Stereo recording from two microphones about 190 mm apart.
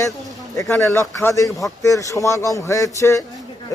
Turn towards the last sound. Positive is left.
turn(degrees=15)  # may be behind; listen again after turning